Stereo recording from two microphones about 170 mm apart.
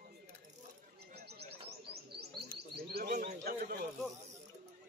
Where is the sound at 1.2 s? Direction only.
70° right (ahead or behind).